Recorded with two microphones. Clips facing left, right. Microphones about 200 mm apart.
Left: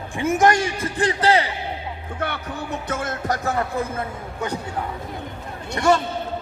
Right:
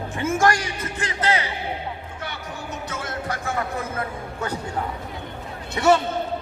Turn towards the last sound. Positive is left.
turn(degrees=-5)  # may be behind; listen again after turning